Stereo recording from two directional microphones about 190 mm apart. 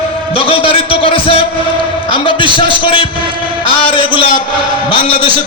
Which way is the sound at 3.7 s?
25° left (ahead or behind).